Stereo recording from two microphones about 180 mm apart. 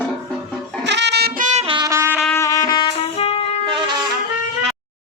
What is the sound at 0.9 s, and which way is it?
Music, 75° right (ahead or behind).